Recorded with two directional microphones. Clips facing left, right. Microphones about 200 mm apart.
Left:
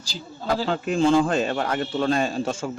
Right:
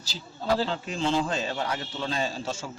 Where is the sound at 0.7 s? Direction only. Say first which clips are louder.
Left 8 dB; 50° left (ahead or behind).